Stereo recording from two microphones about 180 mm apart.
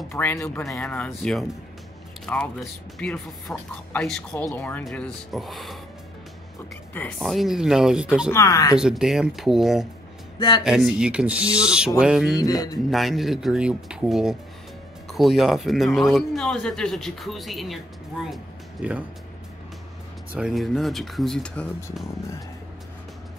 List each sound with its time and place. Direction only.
0.1 s a man's voice: 10° left (ahead or behind)
6.9 s a man's voice: 10° left (ahead or behind)
8.3 s speech: 15° left (ahead or behind)
8.7 s a man's voice: 5° right (ahead or behind)
12.4 s speech: 20° left (ahead or behind)
12.9 s a man's voice: centre (ahead or behind)
20.3 s a man's voice: centre (ahead or behind)